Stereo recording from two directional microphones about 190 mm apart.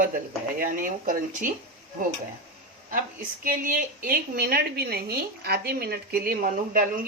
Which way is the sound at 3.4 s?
45° right (ahead or behind).